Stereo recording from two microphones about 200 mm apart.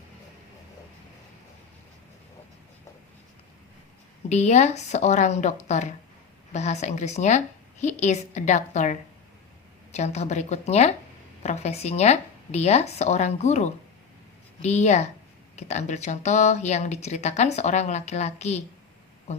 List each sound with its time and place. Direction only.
4.3 s speech: 35° left (ahead or behind)